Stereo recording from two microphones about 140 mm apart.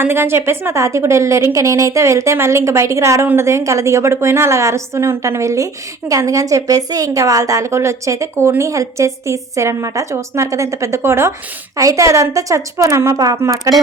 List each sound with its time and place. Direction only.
0.0 s a woman's voice: 15° right (ahead or behind)